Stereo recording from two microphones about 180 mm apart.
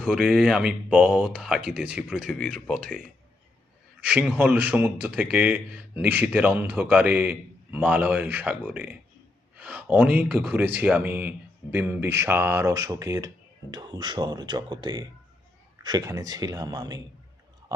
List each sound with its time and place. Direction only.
0.0 s speech: centre (ahead or behind)
4.0 s a man's voice: 10° right (ahead or behind)
17.7 s a sound: 20° right (ahead or behind)